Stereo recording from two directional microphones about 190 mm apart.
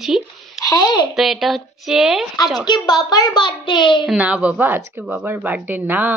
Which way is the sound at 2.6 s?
20° left (ahead or behind).